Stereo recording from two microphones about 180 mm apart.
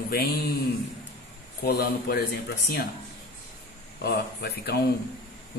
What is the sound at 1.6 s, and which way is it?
Speech, 60° left (ahead or behind).